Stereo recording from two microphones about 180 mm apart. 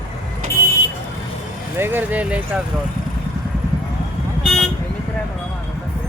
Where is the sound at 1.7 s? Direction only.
10° right (ahead or behind).